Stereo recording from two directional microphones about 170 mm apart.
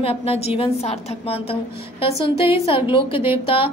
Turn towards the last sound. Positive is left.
turn(degrees=30)  # may be behind; listen again after turning